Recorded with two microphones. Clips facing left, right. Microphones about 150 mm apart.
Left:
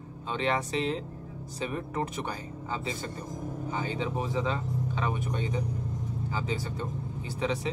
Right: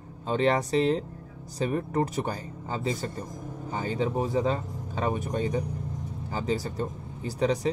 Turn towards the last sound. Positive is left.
turn(degrees=-40)  # may be behind; listen again after turning